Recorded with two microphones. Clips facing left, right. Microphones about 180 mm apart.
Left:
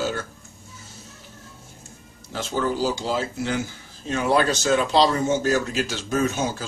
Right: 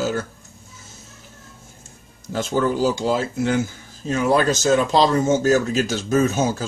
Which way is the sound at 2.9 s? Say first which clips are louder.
Right 4 dB; 50° right (ahead or behind).